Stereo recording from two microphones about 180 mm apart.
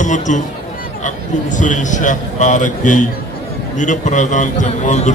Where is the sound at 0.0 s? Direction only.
45° left (ahead or behind).